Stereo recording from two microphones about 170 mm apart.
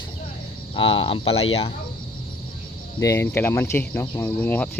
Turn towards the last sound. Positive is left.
turn(degrees=10)  # may be behind; listen again after turning